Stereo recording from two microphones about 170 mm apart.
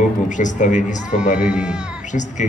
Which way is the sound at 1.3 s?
5° right (ahead or behind).